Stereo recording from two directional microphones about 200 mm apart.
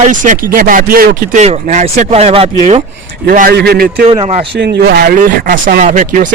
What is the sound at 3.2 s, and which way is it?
Speech, 45° right (ahead or behind).